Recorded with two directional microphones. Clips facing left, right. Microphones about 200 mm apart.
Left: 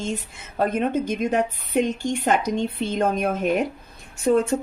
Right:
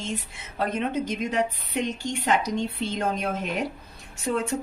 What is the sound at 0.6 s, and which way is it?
A woman's voice, 50° left (ahead or behind).